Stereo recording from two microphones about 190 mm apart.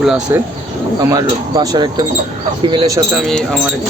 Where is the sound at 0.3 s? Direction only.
15° right (ahead or behind).